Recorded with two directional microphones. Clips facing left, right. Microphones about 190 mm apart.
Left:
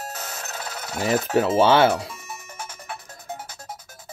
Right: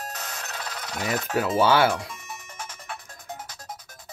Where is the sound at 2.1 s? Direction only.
5° left (ahead or behind).